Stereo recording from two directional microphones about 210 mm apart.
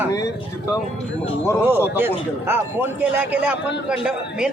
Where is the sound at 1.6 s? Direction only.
10° right (ahead or behind).